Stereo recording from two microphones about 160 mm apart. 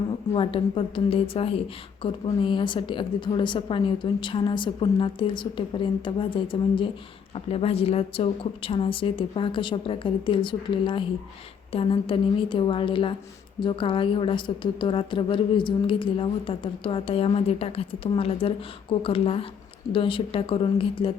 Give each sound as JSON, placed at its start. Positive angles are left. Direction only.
{"t": 0.3, "sound": "a woman's voice", "side_deg": 35}